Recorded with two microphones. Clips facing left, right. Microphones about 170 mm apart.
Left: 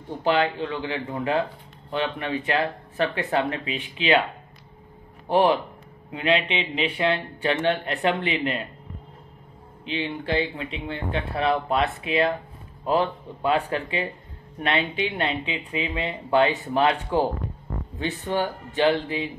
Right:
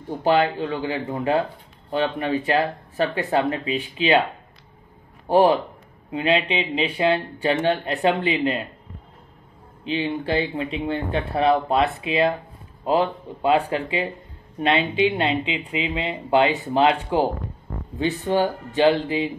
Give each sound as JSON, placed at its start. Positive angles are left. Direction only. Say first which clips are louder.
{"t": 0.2, "sound": "speech", "louder": "right 3 dB", "side_deg": -40}
{"t": 6.1, "sound": "speech", "louder": "right 2 dB", "side_deg": -35}
{"t": 9.8, "sound": "speech", "louder": "right 4 dB", "side_deg": -40}
{"t": 17.9, "sound": "speech", "louder": "right 5 dB", "side_deg": -35}